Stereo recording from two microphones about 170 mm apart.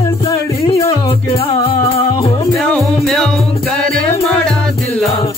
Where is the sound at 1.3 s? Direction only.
35° left (ahead or behind).